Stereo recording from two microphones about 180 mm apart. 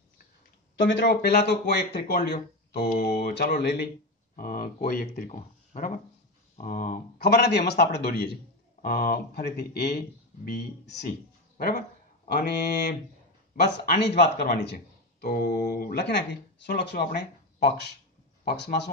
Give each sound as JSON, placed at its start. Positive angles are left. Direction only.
{"t": 0.8, "sound": "speech", "side_deg": 75}
{"t": 4.4, "sound": "speech", "side_deg": 50}
{"t": 7.2, "sound": "a man's voice", "side_deg": 65}
{"t": 8.8, "sound": "speech", "side_deg": 55}
{"t": 11.5, "sound": "a sound", "side_deg": 45}
{"t": 12.3, "sound": "speech", "side_deg": 60}
{"t": 14.0, "sound": "speech", "side_deg": 60}